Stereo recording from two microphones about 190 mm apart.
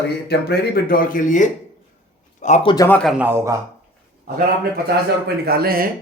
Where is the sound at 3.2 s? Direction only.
10° right (ahead or behind).